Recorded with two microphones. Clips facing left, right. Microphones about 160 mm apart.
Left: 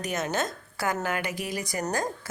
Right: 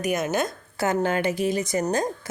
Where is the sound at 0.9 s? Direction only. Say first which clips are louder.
Right 6 dB; 30° right (ahead or behind).